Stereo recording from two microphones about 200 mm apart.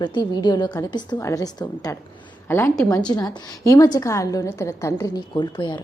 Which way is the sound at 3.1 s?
20° left (ahead or behind).